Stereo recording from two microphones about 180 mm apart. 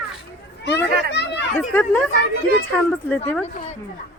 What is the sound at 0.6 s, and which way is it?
Speech, 70° left (ahead or behind).